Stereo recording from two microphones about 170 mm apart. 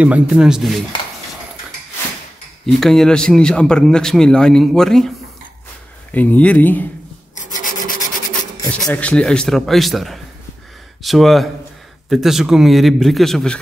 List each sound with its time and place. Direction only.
0.0 s speech: 5° right (ahead or behind)
2.6 s speech: 5° left (ahead or behind)
6.1 s speech: 10° left (ahead or behind)
7.3 s rub: 50° left (ahead or behind)
8.8 s speech: 5° left (ahead or behind)